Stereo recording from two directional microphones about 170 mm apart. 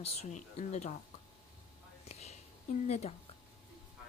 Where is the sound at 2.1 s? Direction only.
40° left (ahead or behind).